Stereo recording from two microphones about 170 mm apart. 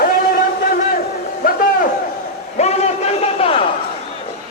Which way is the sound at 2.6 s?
35° left (ahead or behind).